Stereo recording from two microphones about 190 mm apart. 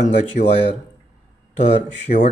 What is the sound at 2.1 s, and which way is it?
Speech, 45° left (ahead or behind).